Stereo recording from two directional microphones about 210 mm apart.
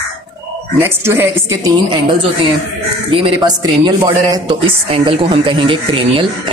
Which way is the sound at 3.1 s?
20° right (ahead or behind).